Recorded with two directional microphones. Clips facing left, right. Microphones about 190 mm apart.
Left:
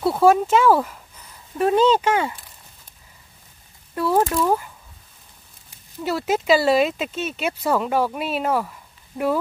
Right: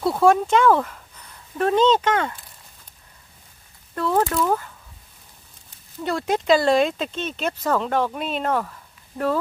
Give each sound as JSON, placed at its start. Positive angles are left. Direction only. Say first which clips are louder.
{"t": 0.0, "sound": "speech", "louder": "left 1 dB", "side_deg": 5}
{"t": 3.9, "sound": "speech", "louder": "left 2 dB", "side_deg": 10}
{"t": 6.0, "sound": "speech", "louder": "even", "side_deg": 5}